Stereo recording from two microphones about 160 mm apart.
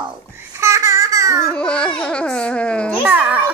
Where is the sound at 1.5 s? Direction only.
5° left (ahead or behind).